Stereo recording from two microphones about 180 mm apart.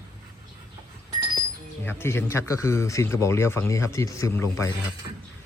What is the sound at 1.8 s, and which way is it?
Speech, 15° left (ahead or behind).